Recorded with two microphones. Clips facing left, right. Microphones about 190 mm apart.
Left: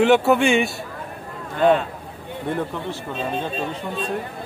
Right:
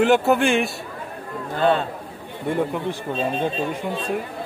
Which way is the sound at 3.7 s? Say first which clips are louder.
Right 1 dB; 10° right (ahead or behind).